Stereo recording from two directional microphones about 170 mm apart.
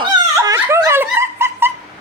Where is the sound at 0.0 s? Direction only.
20° right (ahead or behind).